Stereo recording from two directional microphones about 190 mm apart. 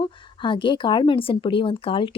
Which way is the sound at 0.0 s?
25° left (ahead or behind).